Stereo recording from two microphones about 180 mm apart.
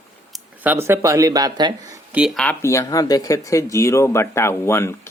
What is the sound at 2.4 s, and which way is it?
Speech, 15° left (ahead or behind).